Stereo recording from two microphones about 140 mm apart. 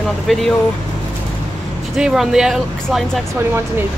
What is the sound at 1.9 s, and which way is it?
Speech, 5° right (ahead or behind).